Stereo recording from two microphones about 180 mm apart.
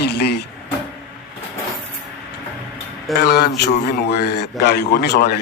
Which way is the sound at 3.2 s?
65° left (ahead or behind).